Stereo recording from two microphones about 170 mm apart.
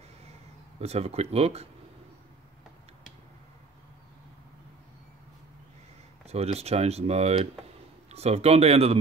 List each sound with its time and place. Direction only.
0.7 s speech: 40° right (ahead or behind)
6.2 s speech: 40° right (ahead or behind)